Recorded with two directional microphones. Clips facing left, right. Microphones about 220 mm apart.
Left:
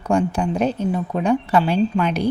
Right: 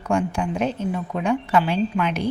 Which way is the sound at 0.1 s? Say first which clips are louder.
Left 3 dB; 35° left (ahead or behind).